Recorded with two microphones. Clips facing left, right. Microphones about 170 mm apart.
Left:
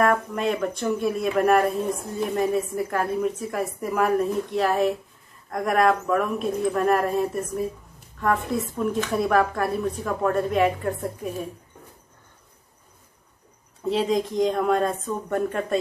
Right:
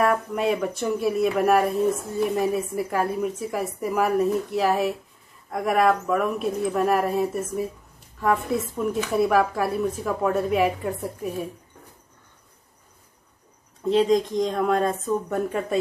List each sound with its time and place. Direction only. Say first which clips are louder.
0.0 s a woman's voice: even; 5° right (ahead or behind)
13.8 s a woman's voice: right 3 dB; centre (ahead or behind)